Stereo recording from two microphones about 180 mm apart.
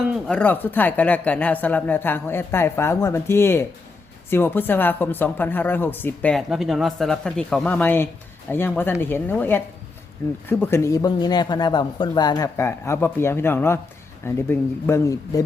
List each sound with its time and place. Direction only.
0.3 s speech: 10° left (ahead or behind)